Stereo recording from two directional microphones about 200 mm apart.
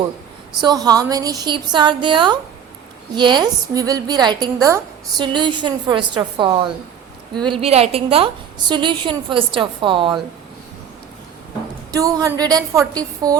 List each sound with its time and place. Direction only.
0.6 s a woman's voice: 20° right (ahead or behind)
11.9 s a woman's voice: 15° right (ahead or behind)